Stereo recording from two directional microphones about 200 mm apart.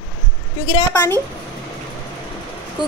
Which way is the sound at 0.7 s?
25° left (ahead or behind).